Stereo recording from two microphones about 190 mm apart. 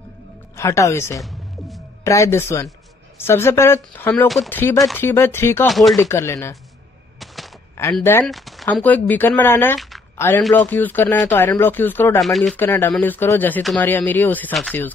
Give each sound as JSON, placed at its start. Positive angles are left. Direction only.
{"t": 0.6, "sound": "speech", "side_deg": 15}
{"t": 1.2, "sound": "music", "side_deg": 0}
{"t": 2.0, "sound": "speech", "side_deg": 15}
{"t": 5.7, "sound": "speech", "side_deg": 0}
{"t": 5.9, "sound": "speech", "side_deg": 15}
{"t": 7.2, "sound": "a sound", "side_deg": 0}
{"t": 7.9, "sound": "speech", "side_deg": 10}
{"t": 8.3, "sound": "a man's voice", "side_deg": 0}
{"t": 12.5, "sound": "speech", "side_deg": 15}